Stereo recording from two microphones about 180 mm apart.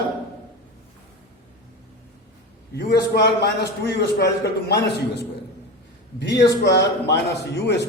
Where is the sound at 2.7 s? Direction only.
60° left (ahead or behind).